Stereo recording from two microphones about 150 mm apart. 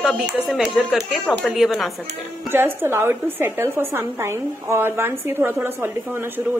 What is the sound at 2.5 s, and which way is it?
A woman's voice, 15° right (ahead or behind).